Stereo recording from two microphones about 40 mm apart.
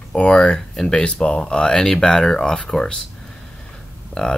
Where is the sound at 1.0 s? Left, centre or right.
Left.